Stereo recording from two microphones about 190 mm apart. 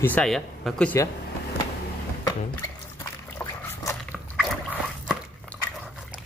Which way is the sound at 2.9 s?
15° left (ahead or behind).